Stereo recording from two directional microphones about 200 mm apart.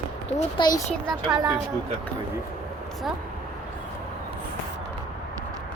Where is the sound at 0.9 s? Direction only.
Centre (ahead or behind).